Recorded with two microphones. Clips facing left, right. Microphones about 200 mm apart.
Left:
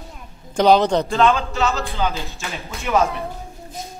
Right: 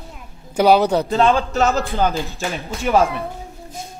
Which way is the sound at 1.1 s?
30° right (ahead or behind).